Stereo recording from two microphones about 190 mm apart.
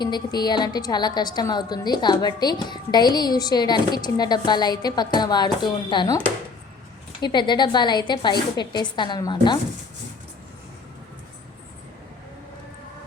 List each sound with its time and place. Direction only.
0.0 s a woman's voice: 20° left (ahead or behind)